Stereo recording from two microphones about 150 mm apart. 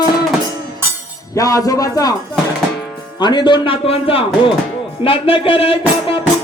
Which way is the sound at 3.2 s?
30° left (ahead or behind).